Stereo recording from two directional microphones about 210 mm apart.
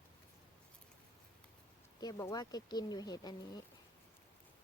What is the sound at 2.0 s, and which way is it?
Speech, 15° left (ahead or behind).